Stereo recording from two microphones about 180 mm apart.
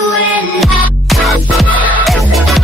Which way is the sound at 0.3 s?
10° right (ahead or behind).